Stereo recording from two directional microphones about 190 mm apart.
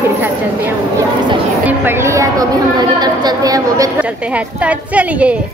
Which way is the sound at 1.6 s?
10° right (ahead or behind).